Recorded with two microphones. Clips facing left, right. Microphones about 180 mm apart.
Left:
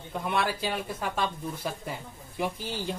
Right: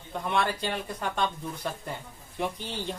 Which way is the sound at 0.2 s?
5° left (ahead or behind).